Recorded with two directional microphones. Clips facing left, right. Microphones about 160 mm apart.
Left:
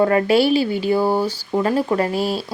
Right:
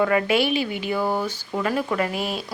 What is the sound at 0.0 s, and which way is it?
Speech, 35° left (ahead or behind).